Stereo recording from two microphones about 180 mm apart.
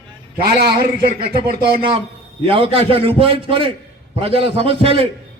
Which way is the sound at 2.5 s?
30° right (ahead or behind).